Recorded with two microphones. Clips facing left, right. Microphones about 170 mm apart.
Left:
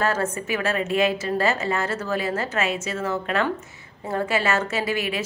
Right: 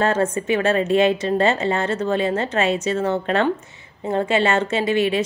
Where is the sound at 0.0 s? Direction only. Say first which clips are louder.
Right 5 dB; 30° right (ahead or behind).